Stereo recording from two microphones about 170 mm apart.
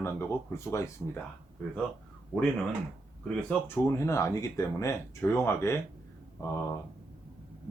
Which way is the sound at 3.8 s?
15° left (ahead or behind).